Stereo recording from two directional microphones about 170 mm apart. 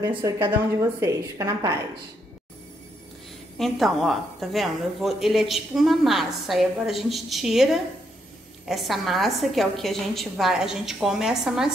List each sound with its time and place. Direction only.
0.2 s a woman's voice: 15° right (ahead or behind)
3.5 s a woman's voice: centre (ahead or behind)